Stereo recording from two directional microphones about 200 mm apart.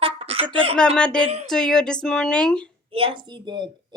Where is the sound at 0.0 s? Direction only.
30° right (ahead or behind).